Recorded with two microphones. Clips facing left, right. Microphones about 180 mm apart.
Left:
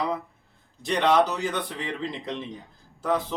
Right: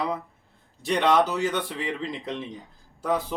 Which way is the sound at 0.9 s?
5° right (ahead or behind).